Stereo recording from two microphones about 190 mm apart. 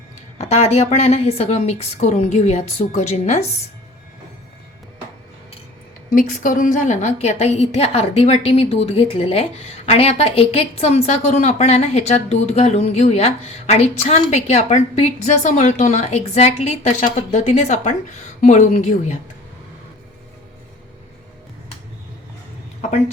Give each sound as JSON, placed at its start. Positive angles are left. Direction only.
{"t": 0.3, "sound": "a woman's voice", "side_deg": 35}
{"t": 6.1, "sound": "a woman's voice", "side_deg": 45}
{"t": 22.8, "sound": "a sound", "side_deg": 40}